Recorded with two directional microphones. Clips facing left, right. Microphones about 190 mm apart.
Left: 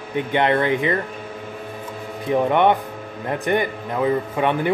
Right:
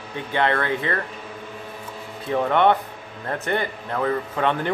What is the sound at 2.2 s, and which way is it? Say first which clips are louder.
A man's voice: left 2 dB; 15° left (ahead or behind).